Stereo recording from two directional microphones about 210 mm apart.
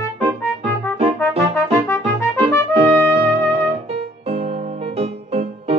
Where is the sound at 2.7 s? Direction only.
25° right (ahead or behind).